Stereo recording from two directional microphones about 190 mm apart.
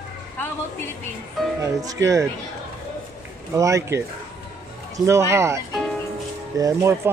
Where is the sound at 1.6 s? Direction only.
20° right (ahead or behind).